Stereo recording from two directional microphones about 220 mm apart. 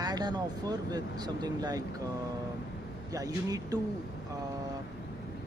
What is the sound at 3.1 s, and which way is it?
Speech, 15° right (ahead or behind).